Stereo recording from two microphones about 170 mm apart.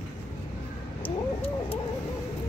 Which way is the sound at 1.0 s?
35° left (ahead or behind).